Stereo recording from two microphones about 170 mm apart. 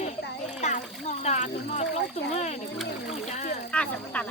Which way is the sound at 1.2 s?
40° left (ahead or behind).